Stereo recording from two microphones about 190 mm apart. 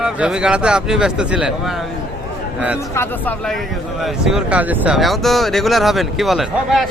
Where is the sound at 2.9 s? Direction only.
10° left (ahead or behind).